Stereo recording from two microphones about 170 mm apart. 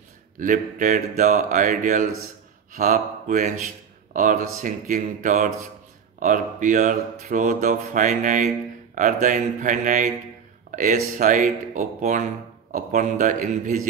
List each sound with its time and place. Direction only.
0.4 s speech: 45° right (ahead or behind)